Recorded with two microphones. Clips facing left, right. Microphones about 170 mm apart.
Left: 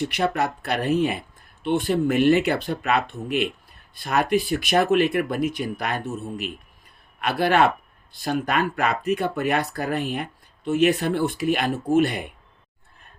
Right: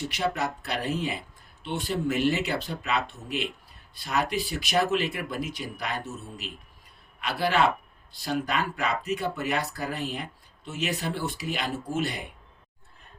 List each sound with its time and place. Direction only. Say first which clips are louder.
0.1 s speech: left 5 dB; 55° left (ahead or behind)